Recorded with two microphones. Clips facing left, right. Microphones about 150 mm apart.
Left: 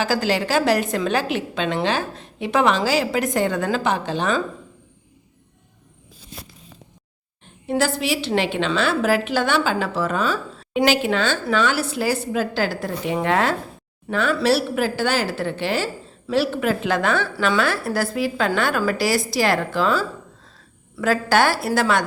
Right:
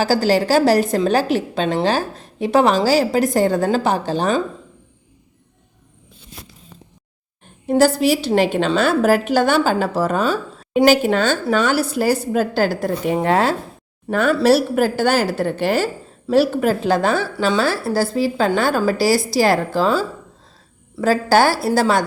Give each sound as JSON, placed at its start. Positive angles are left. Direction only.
{"t": 0.0, "sound": "a woman's voice", "side_deg": -40}
{"t": 7.7, "sound": "a woman's voice", "side_deg": -40}
{"t": 14.1, "sound": "a woman's voice", "side_deg": -45}